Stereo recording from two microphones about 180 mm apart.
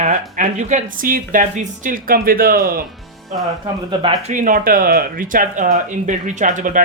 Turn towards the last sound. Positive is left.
turn(degrees=-45)  # may be behind; listen again after turning